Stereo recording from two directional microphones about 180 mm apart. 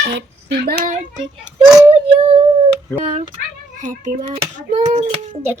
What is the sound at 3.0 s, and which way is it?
A child's voice, 40° right (ahead or behind).